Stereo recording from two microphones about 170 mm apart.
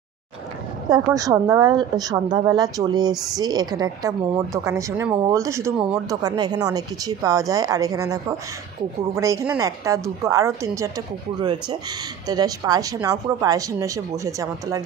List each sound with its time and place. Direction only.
0.8 s a woman's voice: 20° right (ahead or behind)
12.3 s a woman's voice: 20° right (ahead or behind)